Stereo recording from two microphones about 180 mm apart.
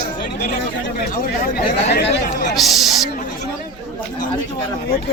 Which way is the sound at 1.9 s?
70° left (ahead or behind).